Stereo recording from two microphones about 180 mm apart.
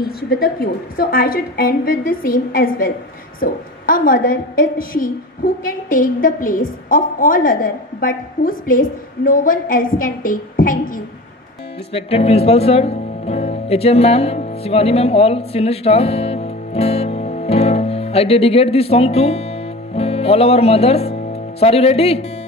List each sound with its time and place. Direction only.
0.0 s a woman's voice: 55° left (ahead or behind)
11.9 s speech: 35° left (ahead or behind)